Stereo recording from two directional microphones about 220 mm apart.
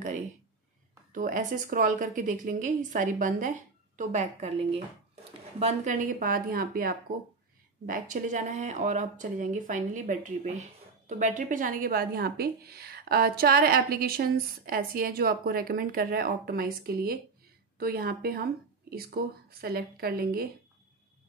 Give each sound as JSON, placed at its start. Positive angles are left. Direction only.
{"t": 1.1, "sound": "speech", "side_deg": -35}